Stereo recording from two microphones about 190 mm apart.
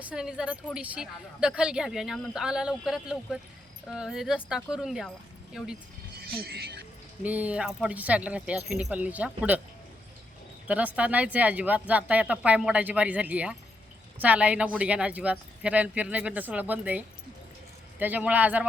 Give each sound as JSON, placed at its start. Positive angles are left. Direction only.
{"t": 0.0, "sound": "a woman's voice", "side_deg": -5}
{"t": 6.1, "sound": "speech", "side_deg": -55}
{"t": 7.2, "sound": "speech", "side_deg": -10}
{"t": 10.7, "sound": "speech", "side_deg": -10}
{"t": 18.0, "sound": "speech", "side_deg": -10}